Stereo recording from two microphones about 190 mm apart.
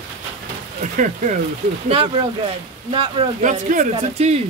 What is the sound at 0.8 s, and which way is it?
Speech, 40° right (ahead or behind).